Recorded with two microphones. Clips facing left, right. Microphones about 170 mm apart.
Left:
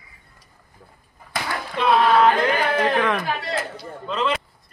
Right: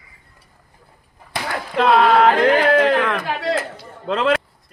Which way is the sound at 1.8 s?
85° right.